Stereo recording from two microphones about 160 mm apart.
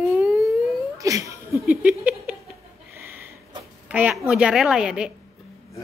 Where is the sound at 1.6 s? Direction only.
5° right (ahead or behind).